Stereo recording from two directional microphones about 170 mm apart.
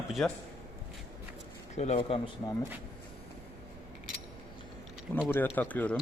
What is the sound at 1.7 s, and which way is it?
Speech, 40° left (ahead or behind).